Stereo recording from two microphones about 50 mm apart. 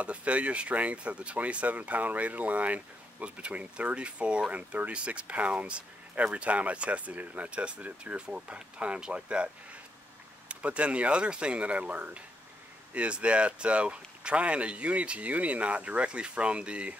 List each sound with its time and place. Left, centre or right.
0.0 s speech: right